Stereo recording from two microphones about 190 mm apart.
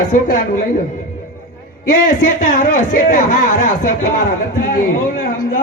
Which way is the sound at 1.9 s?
45° left (ahead or behind).